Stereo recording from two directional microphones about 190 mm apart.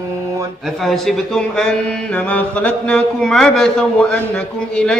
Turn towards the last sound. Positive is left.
turn(degrees=5)  # may be behind; listen again after turning